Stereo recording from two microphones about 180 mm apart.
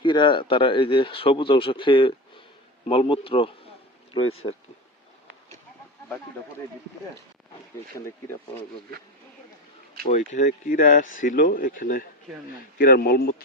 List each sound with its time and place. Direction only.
0.0 s speech: 25° left (ahead or behind)
7.9 s speech: 15° left (ahead or behind)
10.1 s a man's voice: 45° left (ahead or behind); by 13.3 s 60° left (ahead or behind)